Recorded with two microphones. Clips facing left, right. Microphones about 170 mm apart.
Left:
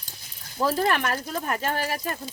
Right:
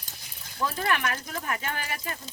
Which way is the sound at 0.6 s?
35° left (ahead or behind).